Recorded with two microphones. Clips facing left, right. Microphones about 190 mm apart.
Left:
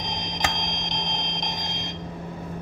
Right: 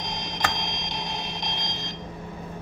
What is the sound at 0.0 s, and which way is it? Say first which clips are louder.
Clock: left 1 dB; 15° left (ahead or behind).